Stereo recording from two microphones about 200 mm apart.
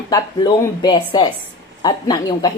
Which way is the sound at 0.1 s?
20° left (ahead or behind).